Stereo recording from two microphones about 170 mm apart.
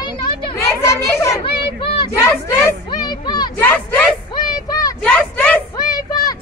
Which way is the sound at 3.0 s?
25° left (ahead or behind).